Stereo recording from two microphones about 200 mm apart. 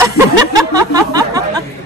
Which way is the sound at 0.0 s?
20° right (ahead or behind).